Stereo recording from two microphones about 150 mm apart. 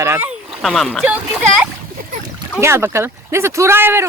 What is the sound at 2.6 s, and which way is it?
Speech, 15° right (ahead or behind).